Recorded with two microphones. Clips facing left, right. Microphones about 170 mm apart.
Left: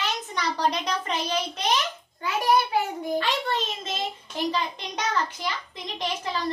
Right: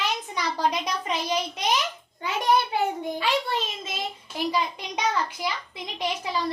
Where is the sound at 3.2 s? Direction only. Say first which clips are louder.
Right 1 dB; 10° right (ahead or behind).